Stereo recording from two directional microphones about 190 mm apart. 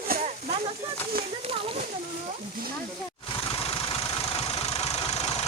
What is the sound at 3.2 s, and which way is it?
Vehicle, 25° left (ahead or behind).